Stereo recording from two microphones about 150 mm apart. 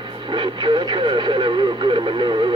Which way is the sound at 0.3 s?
30° right (ahead or behind).